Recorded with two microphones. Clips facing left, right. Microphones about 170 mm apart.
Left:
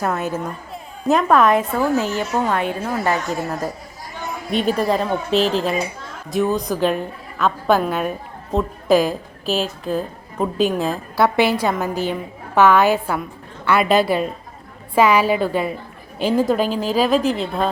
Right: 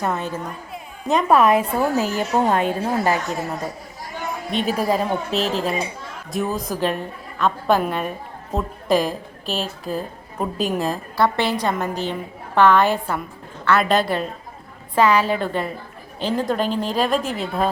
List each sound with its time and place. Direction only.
0.0 s a woman's voice: 5° left (ahead or behind); by 2.4 s 10° right (ahead or behind)
2.4 s a woman's voice: 35° right (ahead or behind)
3.2 s a woman's voice: centre (ahead or behind)